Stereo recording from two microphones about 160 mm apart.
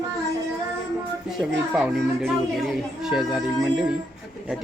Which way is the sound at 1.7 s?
Centre (ahead or behind).